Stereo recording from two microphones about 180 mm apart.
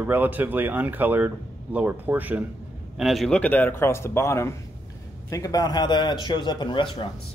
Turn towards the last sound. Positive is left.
turn(degrees=25)  # may be behind; listen again after turning